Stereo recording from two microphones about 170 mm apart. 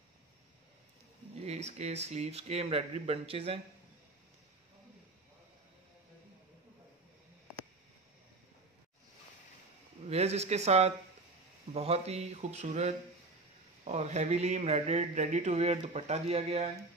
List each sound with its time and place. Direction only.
1.4 s speech: 40° right (ahead or behind)
10.0 s speech: 40° right (ahead or behind)